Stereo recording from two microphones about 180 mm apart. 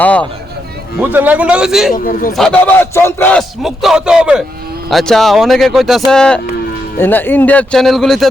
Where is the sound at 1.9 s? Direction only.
55° left (ahead or behind).